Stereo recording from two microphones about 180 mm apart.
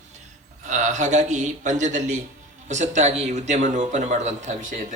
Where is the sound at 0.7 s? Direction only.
45° right (ahead or behind).